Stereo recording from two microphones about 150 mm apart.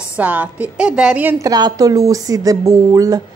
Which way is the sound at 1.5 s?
25° right (ahead or behind).